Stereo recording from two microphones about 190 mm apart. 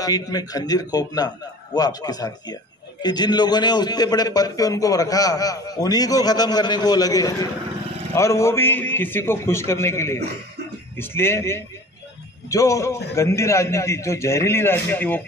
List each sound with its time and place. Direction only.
0.0 s a man's voice: 20° left (ahead or behind)